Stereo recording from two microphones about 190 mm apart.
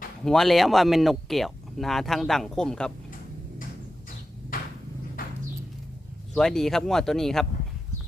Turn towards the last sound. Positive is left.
turn(degrees=0)  # may be behind; listen again after turning